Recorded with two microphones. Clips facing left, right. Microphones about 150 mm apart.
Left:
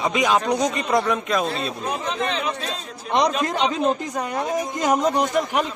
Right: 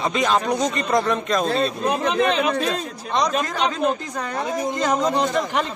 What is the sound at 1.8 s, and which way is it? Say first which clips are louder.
Speech: right 5 dB; 75° right (ahead or behind).